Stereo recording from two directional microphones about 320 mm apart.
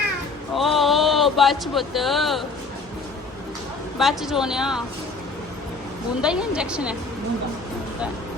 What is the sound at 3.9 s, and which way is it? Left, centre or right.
Speech, centre.